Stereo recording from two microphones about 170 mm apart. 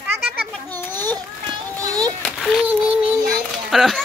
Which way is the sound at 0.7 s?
10° left (ahead or behind).